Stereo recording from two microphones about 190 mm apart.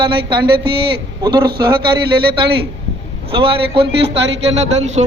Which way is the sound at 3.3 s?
30° right (ahead or behind).